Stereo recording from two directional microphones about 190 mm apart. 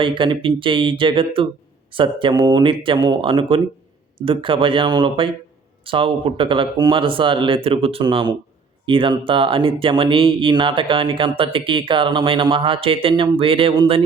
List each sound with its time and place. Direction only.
0.0 s speech: 25° right (ahead or behind)